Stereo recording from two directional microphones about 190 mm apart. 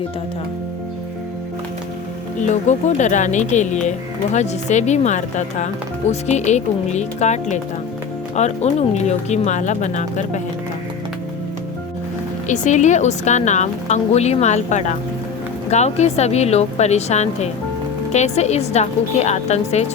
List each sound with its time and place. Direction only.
2.5 s speech: 40° left (ahead or behind)
12.5 s speech: 40° left (ahead or behind)